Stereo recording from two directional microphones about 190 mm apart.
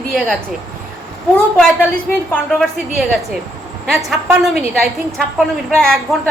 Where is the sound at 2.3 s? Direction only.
Centre (ahead or behind).